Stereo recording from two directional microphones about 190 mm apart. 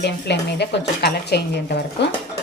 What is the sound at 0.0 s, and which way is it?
A woman's voice, 60° left (ahead or behind).